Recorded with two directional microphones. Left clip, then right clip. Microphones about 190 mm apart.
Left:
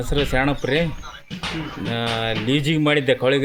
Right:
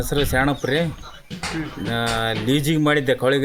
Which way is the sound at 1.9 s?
10° right (ahead or behind).